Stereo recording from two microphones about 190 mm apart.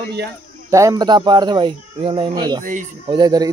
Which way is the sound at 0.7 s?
15° right (ahead or behind).